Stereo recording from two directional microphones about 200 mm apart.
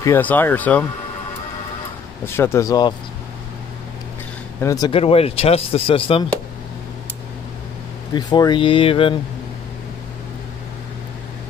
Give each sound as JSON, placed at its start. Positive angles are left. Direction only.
{"t": 0.0, "sound": "speech", "side_deg": 10}
{"t": 2.2, "sound": "speech", "side_deg": 10}
{"t": 4.6, "sound": "speech", "side_deg": 15}
{"t": 8.1, "sound": "speech", "side_deg": 20}